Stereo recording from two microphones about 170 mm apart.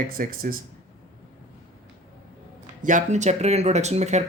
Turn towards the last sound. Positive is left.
turn(degrees=-40)  # may be behind; listen again after turning